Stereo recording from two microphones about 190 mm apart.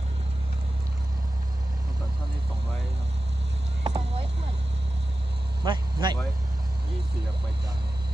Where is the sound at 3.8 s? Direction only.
25° right (ahead or behind).